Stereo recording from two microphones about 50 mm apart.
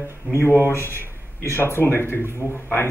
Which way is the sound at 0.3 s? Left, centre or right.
Left.